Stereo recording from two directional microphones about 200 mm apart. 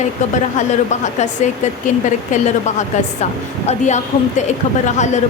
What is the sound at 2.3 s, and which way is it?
Speech, 35° left (ahead or behind).